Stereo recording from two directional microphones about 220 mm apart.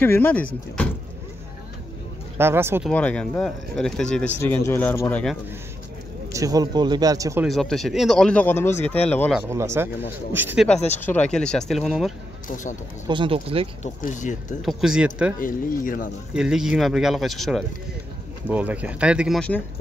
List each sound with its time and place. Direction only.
0.0 s speech: 10° left (ahead or behind)
2.3 s a man's voice: 10° right (ahead or behind)
2.9 s speech: 5° left (ahead or behind)
6.3 s a man's voice: 15° right (ahead or behind)
7.4 s speech: centre (ahead or behind)
9.5 s a man's voice: 10° right (ahead or behind)
11.0 s speech: 5° left (ahead or behind)
13.1 s speech: 25° right (ahead or behind)
13.8 s speech: 35° left (ahead or behind)
14.6 s speech: centre (ahead or behind)
15.3 s speech: 40° left (ahead or behind)
16.3 s speech: 5° right (ahead or behind)